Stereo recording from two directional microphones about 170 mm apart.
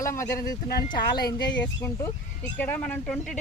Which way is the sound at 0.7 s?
65° left (ahead or behind).